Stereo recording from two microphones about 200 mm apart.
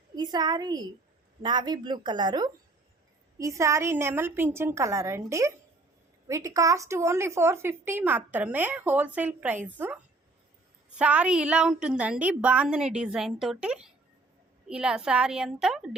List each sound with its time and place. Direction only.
0.2 s a woman's voice: 20° right (ahead or behind); by 16.0 s 5° right (ahead or behind)